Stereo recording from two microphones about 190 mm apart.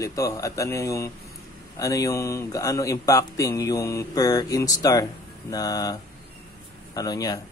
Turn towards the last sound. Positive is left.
turn(degrees=20)  # may be behind; listen again after turning